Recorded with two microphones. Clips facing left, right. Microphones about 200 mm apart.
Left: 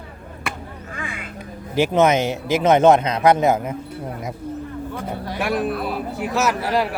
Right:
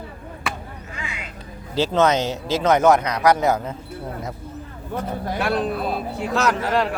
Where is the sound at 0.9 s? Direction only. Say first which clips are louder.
Left 3 dB; 50° left (ahead or behind).